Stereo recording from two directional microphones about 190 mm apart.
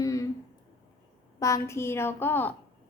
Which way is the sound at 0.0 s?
15° left (ahead or behind).